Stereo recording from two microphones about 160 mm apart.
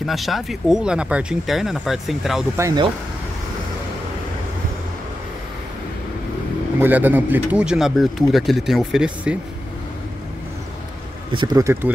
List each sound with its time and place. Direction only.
0.0 s speech: centre (ahead or behind)
2.5 s speech: 20° right (ahead or behind)
6.8 s speech: 10° right (ahead or behind)
11.3 s speech: 25° right (ahead or behind)